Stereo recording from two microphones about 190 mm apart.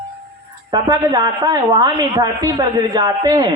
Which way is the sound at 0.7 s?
20° right (ahead or behind).